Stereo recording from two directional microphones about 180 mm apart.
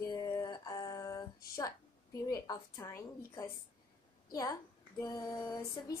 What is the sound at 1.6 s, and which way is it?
A woman's voice, 20° left (ahead or behind).